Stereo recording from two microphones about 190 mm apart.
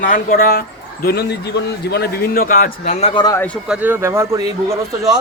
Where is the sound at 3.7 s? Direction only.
10° right (ahead or behind).